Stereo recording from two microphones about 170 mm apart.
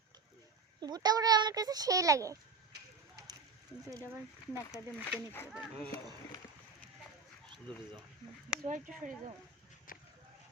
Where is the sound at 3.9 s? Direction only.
15° right (ahead or behind).